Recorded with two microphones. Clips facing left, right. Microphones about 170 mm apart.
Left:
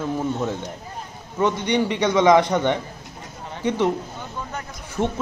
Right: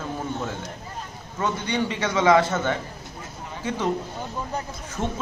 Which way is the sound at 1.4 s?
15° left (ahead or behind).